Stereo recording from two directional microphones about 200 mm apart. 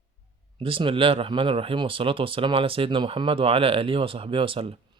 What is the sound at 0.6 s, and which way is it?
Speech, 25° right (ahead or behind).